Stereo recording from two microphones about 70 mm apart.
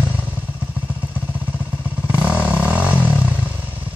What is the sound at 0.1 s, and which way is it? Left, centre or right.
Vehicle, right.